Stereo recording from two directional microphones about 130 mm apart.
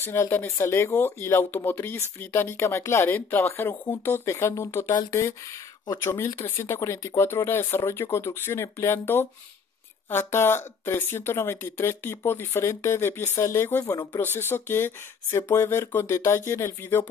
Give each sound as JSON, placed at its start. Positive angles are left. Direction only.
{"t": 0.0, "sound": "speech", "side_deg": 15}